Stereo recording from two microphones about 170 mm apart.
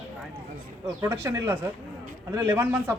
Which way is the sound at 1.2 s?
15° right (ahead or behind).